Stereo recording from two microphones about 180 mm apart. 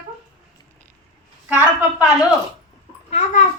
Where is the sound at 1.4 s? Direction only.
10° right (ahead or behind).